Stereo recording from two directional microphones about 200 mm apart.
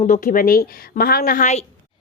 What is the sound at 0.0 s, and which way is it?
A woman's voice, 40° left (ahead or behind).